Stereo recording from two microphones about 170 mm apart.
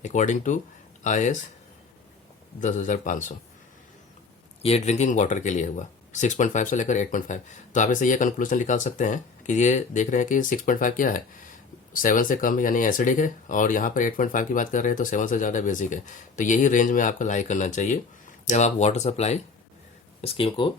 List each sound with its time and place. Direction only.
0.0 s speech: 45° left (ahead or behind)
2.6 s speech: 50° left (ahead or behind)
4.6 s speech: 40° left (ahead or behind)